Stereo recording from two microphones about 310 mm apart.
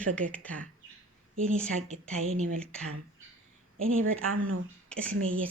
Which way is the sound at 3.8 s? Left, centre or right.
Right.